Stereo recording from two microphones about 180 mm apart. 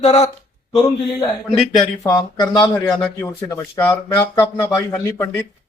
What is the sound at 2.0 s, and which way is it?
Speech, 20° left (ahead or behind).